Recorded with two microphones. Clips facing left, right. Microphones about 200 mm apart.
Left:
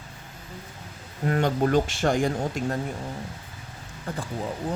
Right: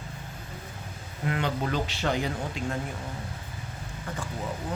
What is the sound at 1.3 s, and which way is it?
Speech, 45° left (ahead or behind).